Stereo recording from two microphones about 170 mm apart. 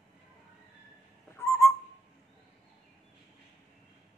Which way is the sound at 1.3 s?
15° left (ahead or behind).